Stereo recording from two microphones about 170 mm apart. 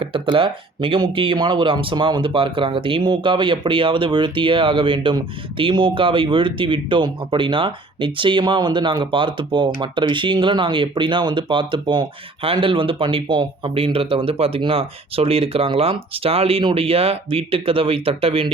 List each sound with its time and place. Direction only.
0.0 s speech: 30° right (ahead or behind)